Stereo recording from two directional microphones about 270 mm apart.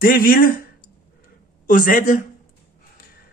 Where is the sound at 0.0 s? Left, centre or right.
Left.